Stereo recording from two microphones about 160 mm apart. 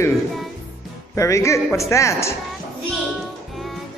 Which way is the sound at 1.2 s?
20° left (ahead or behind).